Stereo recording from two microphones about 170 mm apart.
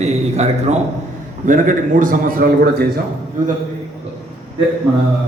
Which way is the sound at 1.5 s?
50° right (ahead or behind).